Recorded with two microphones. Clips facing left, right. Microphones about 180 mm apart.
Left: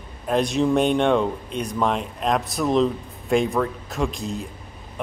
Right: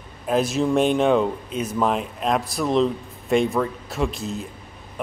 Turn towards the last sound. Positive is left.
turn(degrees=0)  # may be behind; listen again after turning